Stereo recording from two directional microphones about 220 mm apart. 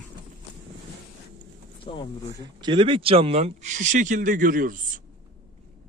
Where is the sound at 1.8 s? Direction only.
20° left (ahead or behind).